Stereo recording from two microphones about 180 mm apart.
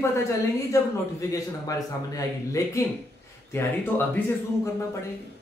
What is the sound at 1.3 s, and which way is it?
A man's voice, 20° left (ahead or behind).